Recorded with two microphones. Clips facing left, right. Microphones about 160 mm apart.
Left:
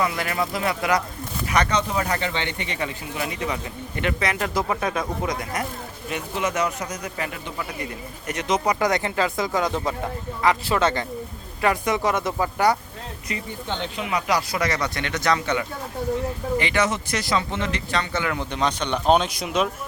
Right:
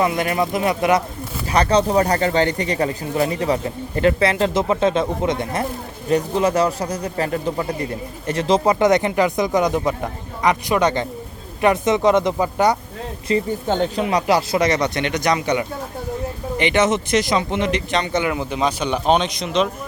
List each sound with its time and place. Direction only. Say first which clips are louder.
0.0 s a man's voice: right 5 dB; 25° right (ahead or behind)
13.3 s speech: right 13 dB; 30° right (ahead or behind)
13.7 s speech: right 6 dB; 45° right (ahead or behind); by 18.3 s 20° right (ahead or behind)
18.3 s speech: right 3 dB; 5° right (ahead or behind)